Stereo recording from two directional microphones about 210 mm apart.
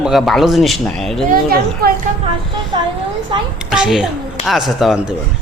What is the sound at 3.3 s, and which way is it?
Speech, 25° right (ahead or behind).